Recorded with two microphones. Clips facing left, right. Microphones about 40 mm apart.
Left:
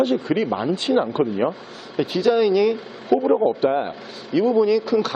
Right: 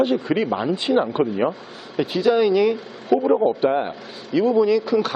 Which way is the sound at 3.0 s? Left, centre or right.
Centre.